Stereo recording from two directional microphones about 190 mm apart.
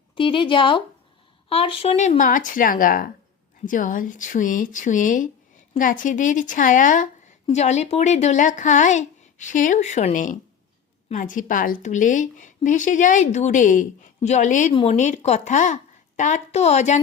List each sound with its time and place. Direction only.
0.2 s a woman's voice: 25° left (ahead or behind)